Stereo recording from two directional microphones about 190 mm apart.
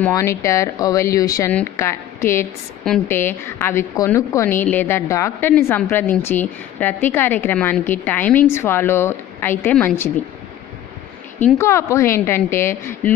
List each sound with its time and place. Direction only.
0.1 s a woman's voice: 15° left (ahead or behind)
11.3 s a woman's voice: 15° left (ahead or behind)